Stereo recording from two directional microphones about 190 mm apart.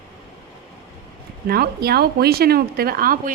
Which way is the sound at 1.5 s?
55° right (ahead or behind).